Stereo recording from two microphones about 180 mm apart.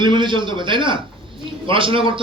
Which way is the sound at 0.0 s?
25° right (ahead or behind).